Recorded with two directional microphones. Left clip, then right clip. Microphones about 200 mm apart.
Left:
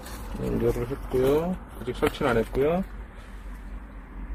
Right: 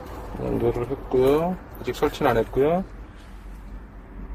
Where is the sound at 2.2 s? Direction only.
Centre (ahead or behind).